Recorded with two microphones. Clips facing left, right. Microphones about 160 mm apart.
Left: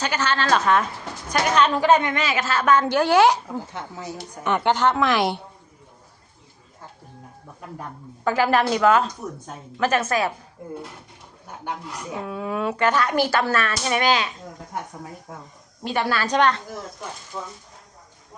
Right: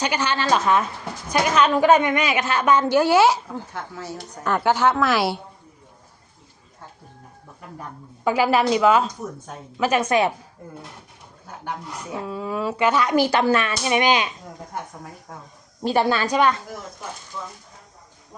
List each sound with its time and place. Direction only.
0.0 s speech: 15° right (ahead or behind)
3.7 s speech: 20° left (ahead or behind)
4.4 s speech: 5° right (ahead or behind)
8.2 s speech: 10° right (ahead or behind)
12.2 s speech: centre (ahead or behind); by 14.3 s 15° right (ahead or behind)
15.8 s a woman's voice: 35° right (ahead or behind)
16.2 s speech: 10° right (ahead or behind)
17.3 s speech: 45° left (ahead or behind)